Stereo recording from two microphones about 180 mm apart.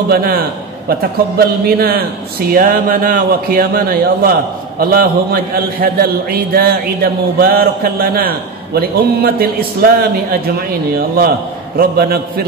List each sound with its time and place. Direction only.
0.1 s a man's voice: 55° right (ahead or behind)